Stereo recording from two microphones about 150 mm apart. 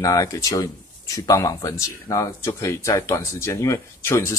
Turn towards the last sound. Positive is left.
turn(degrees=20)  # may be behind; listen again after turning